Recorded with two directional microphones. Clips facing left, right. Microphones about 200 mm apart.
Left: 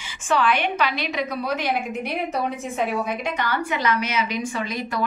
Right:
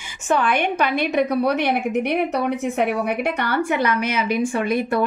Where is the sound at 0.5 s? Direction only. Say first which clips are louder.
Right 2 dB; 55° right (ahead or behind).